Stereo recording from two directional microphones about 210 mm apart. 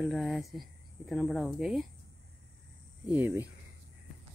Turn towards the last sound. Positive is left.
turn(degrees=-10)  # may be behind; listen again after turning